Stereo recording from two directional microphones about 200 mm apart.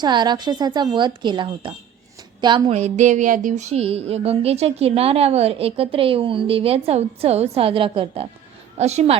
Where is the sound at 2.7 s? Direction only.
35° right (ahead or behind).